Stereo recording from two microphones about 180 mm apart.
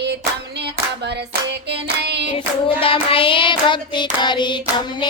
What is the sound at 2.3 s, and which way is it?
Hands, 30° left (ahead or behind).